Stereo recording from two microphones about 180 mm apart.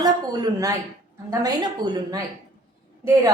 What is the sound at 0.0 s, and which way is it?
A woman's voice, 20° right (ahead or behind).